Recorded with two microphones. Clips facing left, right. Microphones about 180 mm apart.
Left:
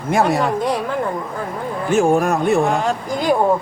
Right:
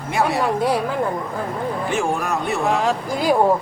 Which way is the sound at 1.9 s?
45° left (ahead or behind).